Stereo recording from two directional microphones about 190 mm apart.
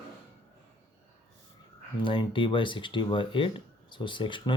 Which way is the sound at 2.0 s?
25° left (ahead or behind).